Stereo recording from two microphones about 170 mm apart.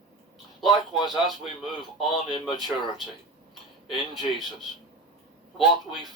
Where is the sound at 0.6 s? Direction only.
Centre (ahead or behind).